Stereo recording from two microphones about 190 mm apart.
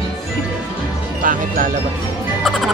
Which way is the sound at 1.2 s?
45° right (ahead or behind).